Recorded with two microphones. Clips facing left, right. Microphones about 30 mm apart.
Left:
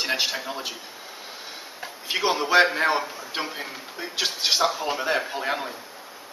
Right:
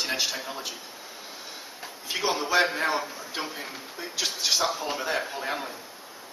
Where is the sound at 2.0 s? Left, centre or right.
Left.